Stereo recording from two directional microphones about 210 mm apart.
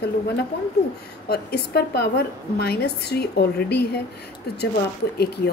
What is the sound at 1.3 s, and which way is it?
A woman's voice, 50° left (ahead or behind).